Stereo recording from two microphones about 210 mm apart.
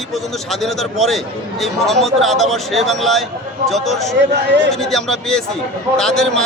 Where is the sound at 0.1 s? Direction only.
Centre (ahead or behind).